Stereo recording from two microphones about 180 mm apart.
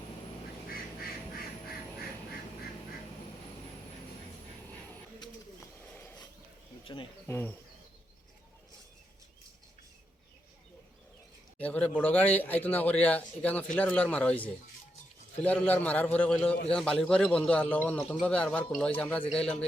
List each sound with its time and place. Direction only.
0.7 s quack: 55° left (ahead or behind)
5.9 s a sound: 10° left (ahead or behind)
6.8 s speech: 25° left (ahead or behind)
7.3 s a man's voice: 10° left (ahead or behind)
11.6 s a man's voice: 10° left (ahead or behind)